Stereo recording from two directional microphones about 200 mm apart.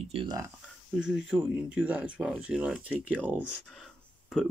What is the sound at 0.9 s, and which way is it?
Speech, 5° right (ahead or behind).